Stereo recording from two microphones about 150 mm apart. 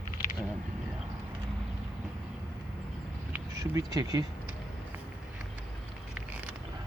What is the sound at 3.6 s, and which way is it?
Speech, 25° right (ahead or behind).